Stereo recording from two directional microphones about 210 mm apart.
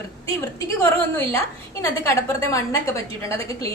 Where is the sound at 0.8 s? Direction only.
10° left (ahead or behind).